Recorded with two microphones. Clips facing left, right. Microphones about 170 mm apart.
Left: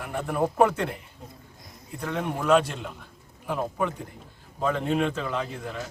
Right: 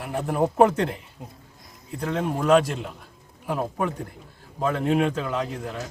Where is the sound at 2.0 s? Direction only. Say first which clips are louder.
Right 3 dB; 35° right (ahead or behind).